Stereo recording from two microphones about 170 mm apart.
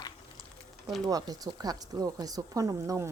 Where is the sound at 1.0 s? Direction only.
20° right (ahead or behind).